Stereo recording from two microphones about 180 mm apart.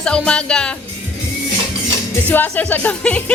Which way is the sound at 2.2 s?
10° left (ahead or behind).